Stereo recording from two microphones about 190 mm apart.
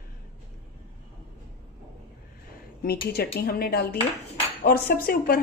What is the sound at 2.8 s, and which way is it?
Speech, 55° left (ahead or behind).